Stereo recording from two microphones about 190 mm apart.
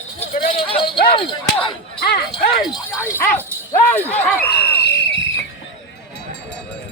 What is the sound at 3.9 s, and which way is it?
Speech, 10° left (ahead or behind).